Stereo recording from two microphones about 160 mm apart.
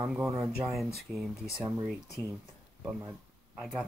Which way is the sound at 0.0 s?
10° right (ahead or behind).